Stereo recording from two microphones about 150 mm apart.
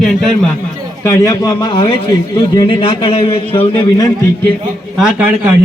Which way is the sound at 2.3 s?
25° left (ahead or behind).